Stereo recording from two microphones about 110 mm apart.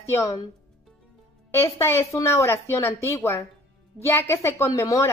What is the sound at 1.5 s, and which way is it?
Speech, 25° left (ahead or behind).